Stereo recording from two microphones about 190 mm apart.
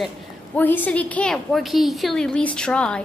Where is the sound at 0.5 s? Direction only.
10° left (ahead or behind).